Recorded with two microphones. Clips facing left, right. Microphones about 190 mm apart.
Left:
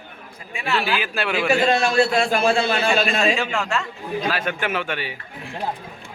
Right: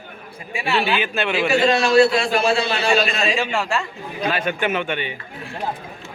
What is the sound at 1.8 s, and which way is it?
A man's voice, 45° left (ahead or behind).